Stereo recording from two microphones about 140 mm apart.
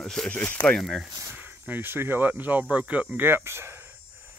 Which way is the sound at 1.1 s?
20° right (ahead or behind).